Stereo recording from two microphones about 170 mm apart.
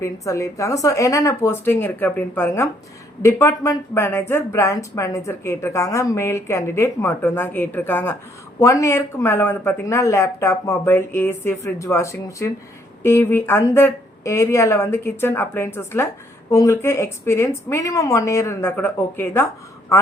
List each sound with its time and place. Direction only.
0.0 s a woman's voice: 15° left (ahead or behind)